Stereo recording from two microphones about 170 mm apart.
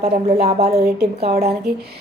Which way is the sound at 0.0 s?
40° right (ahead or behind).